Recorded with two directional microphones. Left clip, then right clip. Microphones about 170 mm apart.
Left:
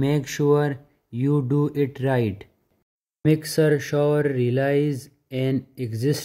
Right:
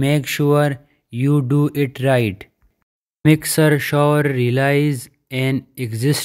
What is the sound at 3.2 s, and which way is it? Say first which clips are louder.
Speech: right 5 dB; 35° right (ahead or behind).